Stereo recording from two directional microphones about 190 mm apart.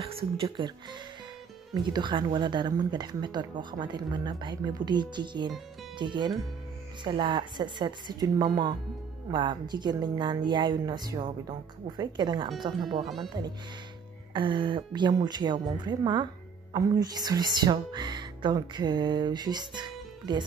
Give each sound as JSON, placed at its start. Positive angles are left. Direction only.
{"t": 0.0, "sound": "speech", "side_deg": -25}
{"t": 13.0, "sound": "speech", "side_deg": 0}
{"t": 14.3, "sound": "speech", "side_deg": -25}